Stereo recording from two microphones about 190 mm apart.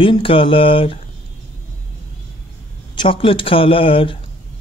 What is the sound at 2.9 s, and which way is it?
Speech, 25° left (ahead or behind).